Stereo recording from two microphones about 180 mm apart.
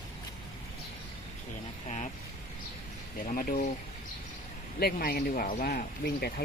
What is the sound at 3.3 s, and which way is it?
Speech, 50° left (ahead or behind).